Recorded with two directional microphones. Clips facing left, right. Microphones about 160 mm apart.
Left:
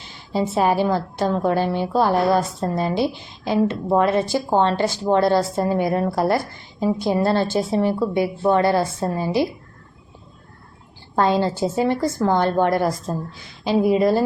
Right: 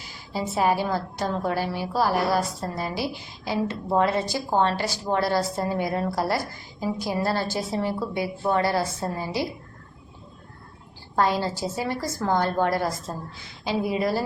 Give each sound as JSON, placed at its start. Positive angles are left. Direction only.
{"t": 0.3, "sound": "a woman's voice", "side_deg": 20}
{"t": 11.1, "sound": "a woman's voice", "side_deg": 20}